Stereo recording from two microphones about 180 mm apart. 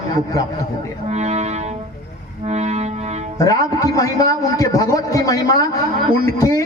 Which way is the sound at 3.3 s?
20° left (ahead or behind).